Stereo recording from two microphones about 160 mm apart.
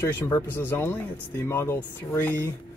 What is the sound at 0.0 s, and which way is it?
Speech, 15° left (ahead or behind).